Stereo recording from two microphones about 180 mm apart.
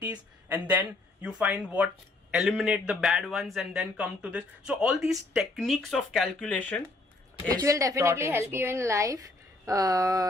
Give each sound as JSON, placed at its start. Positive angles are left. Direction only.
{"t": 0.0, "sound": "a man's voice", "side_deg": -10}
{"t": 7.6, "sound": "a woman's voice", "side_deg": -15}